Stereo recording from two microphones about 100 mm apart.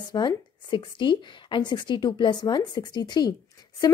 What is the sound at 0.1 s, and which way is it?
A woman's voice, 50° left (ahead or behind).